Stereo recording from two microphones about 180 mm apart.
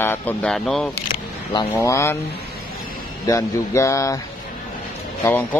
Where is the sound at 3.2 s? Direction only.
15° left (ahead or behind).